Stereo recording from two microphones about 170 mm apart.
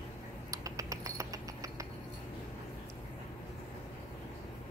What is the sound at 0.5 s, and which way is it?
Cricket, 20° right (ahead or behind).